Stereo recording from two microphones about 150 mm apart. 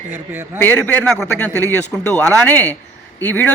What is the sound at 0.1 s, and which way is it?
Speech, 15° right (ahead or behind).